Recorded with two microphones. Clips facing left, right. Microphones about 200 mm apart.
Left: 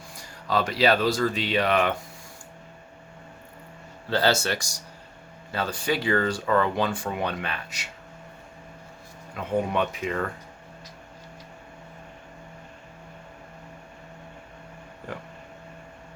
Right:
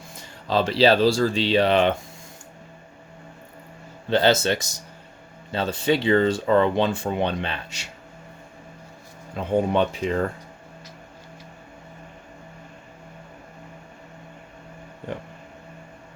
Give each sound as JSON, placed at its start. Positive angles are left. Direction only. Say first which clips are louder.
{"t": 0.2, "sound": "speech", "louder": "right 3 dB", "side_deg": -25}
{"t": 4.1, "sound": "speech", "louder": "right 4 dB", "side_deg": -20}
{"t": 9.3, "sound": "speech", "louder": "right 4 dB", "side_deg": -30}